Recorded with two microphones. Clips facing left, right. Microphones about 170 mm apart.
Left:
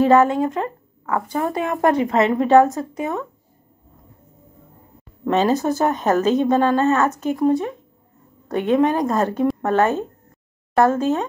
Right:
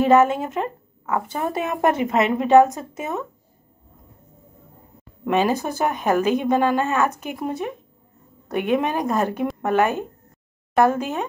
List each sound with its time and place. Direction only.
0.0 s speech: 20° right (ahead or behind)
5.2 s speech: 15° right (ahead or behind)
5.5 s speech: 20° left (ahead or behind)
5.9 s a woman's voice: 15° right (ahead or behind)